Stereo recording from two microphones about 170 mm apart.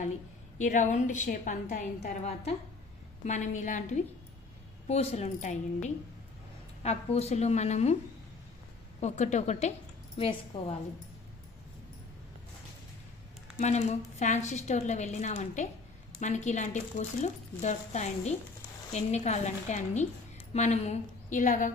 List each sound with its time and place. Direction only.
0.6 s a woman's voice: 45° left (ahead or behind)
9.0 s a woman's voice: 45° left (ahead or behind)
13.6 s a woman's voice: 40° left (ahead or behind)